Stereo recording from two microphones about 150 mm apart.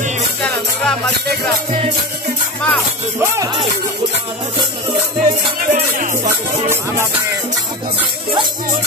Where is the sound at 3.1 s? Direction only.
20° right (ahead or behind).